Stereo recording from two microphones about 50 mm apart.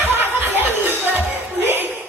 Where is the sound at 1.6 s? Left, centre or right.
Right.